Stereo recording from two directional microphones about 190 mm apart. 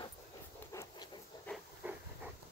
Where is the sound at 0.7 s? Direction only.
15° left (ahead or behind).